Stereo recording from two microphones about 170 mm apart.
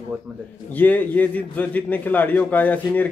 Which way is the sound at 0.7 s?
10° left (ahead or behind).